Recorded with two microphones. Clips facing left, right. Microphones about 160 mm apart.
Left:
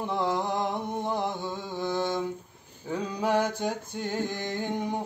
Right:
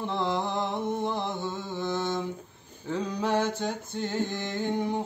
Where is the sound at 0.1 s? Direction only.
10° left (ahead or behind).